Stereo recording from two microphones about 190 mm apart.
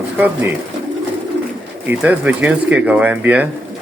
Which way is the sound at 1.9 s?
10° right (ahead or behind).